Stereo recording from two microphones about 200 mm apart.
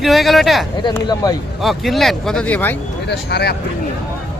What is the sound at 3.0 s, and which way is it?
Speech, 55° left (ahead or behind).